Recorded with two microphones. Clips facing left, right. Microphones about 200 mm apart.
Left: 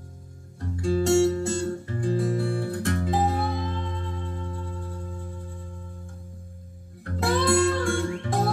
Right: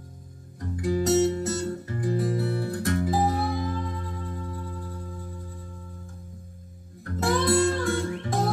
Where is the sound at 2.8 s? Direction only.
25° left (ahead or behind).